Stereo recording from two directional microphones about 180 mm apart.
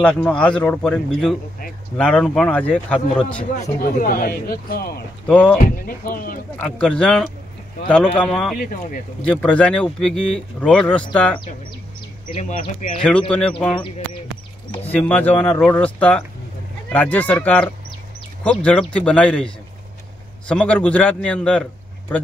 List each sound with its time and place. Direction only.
0.0 s speech: 5° left (ahead or behind)
3.5 s speech: 45° left (ahead or behind)
5.2 s speech: 10° left (ahead or behind)
5.6 s speech: 50° left (ahead or behind)
6.6 s speech: 5° left (ahead or behind)
12.4 s speech: 45° left (ahead or behind)
13.6 s speech: 5° left (ahead or behind)